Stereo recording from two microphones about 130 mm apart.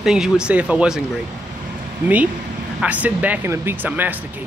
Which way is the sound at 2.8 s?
10° right (ahead or behind).